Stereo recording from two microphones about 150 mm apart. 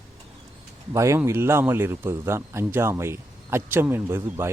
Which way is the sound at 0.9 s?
20° right (ahead or behind).